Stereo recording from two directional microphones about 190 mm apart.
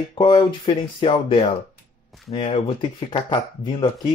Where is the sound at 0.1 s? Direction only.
25° left (ahead or behind).